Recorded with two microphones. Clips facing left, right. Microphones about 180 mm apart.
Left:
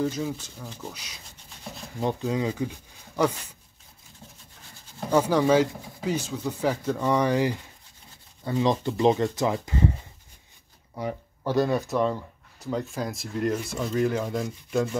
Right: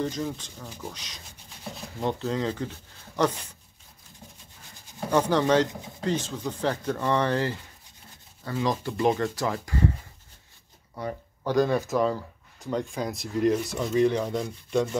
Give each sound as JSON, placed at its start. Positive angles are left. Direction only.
{"t": 0.0, "sound": "speech", "side_deg": 5}
{"t": 5.1, "sound": "speech", "side_deg": 10}
{"t": 11.0, "sound": "speech", "side_deg": 10}